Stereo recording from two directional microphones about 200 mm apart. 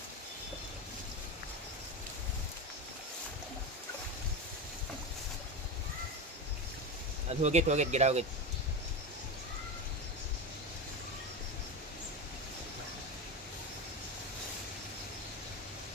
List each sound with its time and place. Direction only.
7.3 s speech: 35° right (ahead or behind)